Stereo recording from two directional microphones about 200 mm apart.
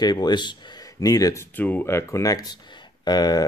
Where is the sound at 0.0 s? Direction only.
20° left (ahead or behind).